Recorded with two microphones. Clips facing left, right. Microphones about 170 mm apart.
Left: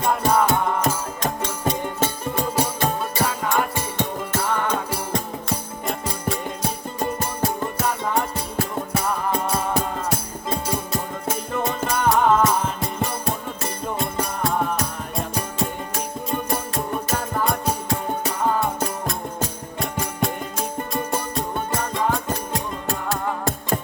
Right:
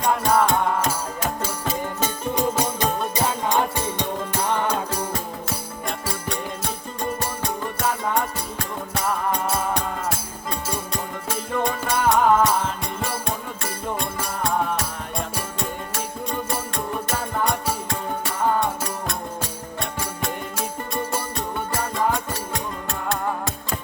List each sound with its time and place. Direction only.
0.0 s music: 5° left (ahead or behind)
3.2 s music: 25° right (ahead or behind)
5.1 s music: centre (ahead or behind)